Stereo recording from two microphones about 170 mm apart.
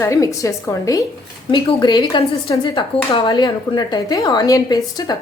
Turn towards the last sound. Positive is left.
turn(degrees=20)  # may be behind; listen again after turning